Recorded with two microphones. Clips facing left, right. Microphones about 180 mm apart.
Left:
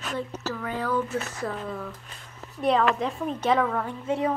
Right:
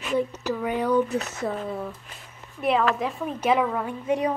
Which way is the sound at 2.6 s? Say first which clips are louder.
Even; 5° right (ahead or behind).